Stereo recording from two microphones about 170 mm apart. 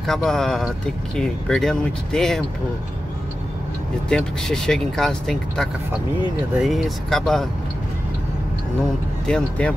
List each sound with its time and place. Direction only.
0.0 s speech: centre (ahead or behind)
4.1 s speech: 5° left (ahead or behind)
9.2 s speech: 5° left (ahead or behind)